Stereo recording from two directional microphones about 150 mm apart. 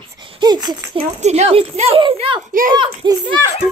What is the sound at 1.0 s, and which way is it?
A child's voice, 50° right (ahead or behind).